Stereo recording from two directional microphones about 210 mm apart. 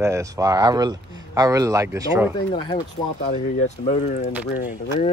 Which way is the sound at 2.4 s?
20° left (ahead or behind).